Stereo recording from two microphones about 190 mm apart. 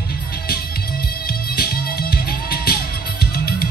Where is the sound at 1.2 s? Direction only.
55° left (ahead or behind).